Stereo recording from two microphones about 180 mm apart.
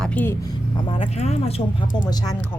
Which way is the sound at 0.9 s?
30° left (ahead or behind).